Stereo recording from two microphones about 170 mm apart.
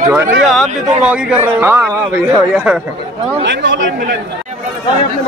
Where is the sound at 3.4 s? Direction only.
90° right.